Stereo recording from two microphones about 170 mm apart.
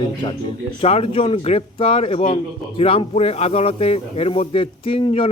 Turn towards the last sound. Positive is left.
turn(degrees=30)  # may be behind; listen again after turning